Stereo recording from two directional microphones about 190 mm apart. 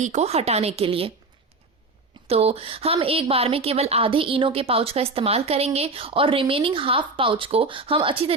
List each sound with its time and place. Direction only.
0.0 s a woman's voice: 35° right (ahead or behind)
2.2 s a woman's voice: 30° right (ahead or behind)